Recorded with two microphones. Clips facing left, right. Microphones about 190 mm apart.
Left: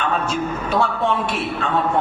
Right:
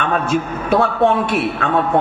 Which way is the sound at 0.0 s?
55° right (ahead or behind).